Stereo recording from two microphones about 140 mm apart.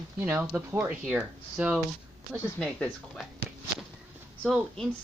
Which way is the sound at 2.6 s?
5° left (ahead or behind).